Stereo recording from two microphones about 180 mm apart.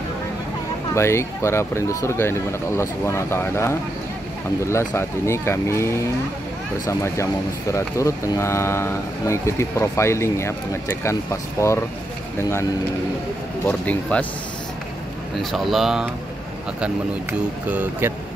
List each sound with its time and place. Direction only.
0.9 s speech: 15° left (ahead or behind)
6.9 s speech: 15° left (ahead or behind)
13.7 s speech: 5° left (ahead or behind)
15.3 s speech: centre (ahead or behind)